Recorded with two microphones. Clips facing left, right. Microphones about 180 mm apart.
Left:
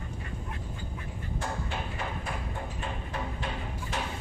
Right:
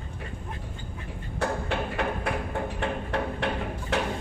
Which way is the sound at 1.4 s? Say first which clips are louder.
Right 8 dB; 70° right (ahead or behind).